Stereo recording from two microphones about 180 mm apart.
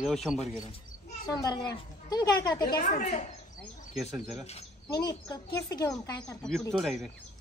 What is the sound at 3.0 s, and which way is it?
Speech, 40° left (ahead or behind).